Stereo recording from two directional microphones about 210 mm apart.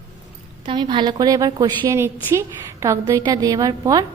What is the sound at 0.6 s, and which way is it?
A woman's voice, 25° right (ahead or behind).